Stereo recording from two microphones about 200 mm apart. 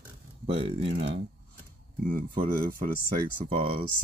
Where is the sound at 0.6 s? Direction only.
30° right (ahead or behind).